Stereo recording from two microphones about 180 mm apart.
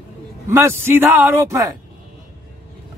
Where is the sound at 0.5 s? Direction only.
15° right (ahead or behind).